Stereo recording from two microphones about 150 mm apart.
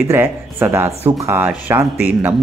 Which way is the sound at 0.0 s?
15° right (ahead or behind).